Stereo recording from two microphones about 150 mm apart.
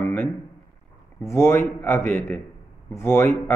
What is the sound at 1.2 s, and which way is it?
A man's voice, 15° left (ahead or behind).